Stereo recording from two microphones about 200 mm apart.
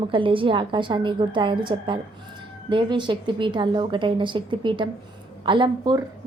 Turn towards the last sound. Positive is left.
turn(degrees=-20)  # may be behind; listen again after turning